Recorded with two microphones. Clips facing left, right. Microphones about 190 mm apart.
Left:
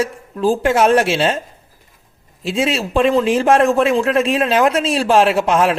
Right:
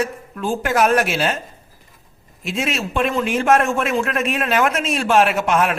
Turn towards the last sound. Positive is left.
turn(degrees=30)  # may be behind; listen again after turning